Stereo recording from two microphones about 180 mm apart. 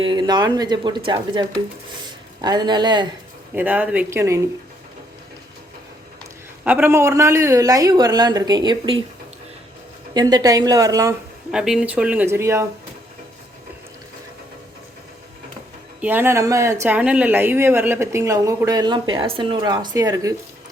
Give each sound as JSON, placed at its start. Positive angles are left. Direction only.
{"t": 0.0, "sound": "a man's voice", "side_deg": -25}
{"t": 3.5, "sound": "a woman's voice", "side_deg": -10}
{"t": 6.7, "sound": "a man's voice", "side_deg": -10}
{"t": 10.2, "sound": "a man's voice", "side_deg": -20}
{"t": 11.5, "sound": "a woman's voice", "side_deg": -5}
{"t": 16.0, "sound": "a woman's voice", "side_deg": -10}